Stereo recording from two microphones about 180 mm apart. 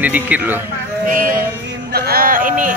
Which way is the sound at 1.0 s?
50° right (ahead or behind).